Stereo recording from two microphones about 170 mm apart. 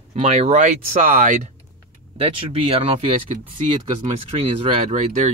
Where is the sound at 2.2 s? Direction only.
30° right (ahead or behind).